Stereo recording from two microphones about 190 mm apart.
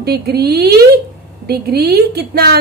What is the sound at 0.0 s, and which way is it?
A woman's voice, 55° right (ahead or behind).